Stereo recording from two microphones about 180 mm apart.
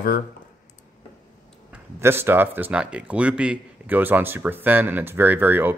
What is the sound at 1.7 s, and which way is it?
Speech, 10° right (ahead or behind).